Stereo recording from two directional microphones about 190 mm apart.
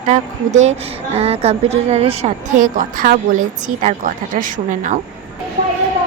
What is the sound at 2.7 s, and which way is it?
A woman's voice, 45° right (ahead or behind).